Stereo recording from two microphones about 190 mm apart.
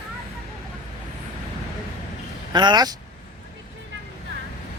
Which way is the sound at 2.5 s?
25° right (ahead or behind).